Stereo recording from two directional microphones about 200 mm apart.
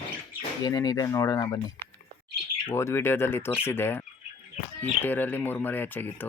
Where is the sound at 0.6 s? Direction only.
20° left (ahead or behind).